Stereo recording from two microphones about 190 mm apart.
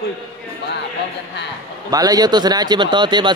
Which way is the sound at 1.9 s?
20° right (ahead or behind).